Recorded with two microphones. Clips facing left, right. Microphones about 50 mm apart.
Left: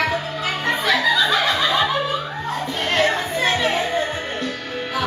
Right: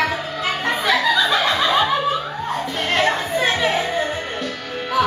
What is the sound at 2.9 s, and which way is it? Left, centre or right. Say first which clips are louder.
Chatter: right 1 dB; centre.